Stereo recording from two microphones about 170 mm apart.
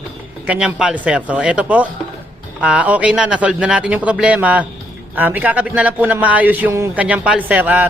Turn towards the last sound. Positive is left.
turn(degrees=-10)  # may be behind; listen again after turning